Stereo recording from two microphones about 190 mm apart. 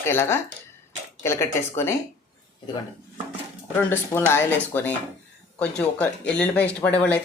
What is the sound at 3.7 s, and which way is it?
Speech, 10° left (ahead or behind).